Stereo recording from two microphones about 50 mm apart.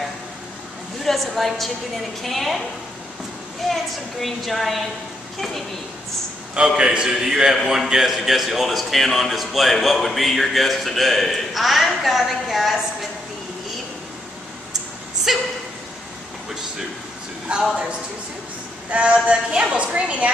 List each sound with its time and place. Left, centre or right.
1.0 s a woman's voice: centre
3.7 s speech: centre
6.8 s a man's voice: centre
15.3 s speech: centre
17.5 s a woman's voice: centre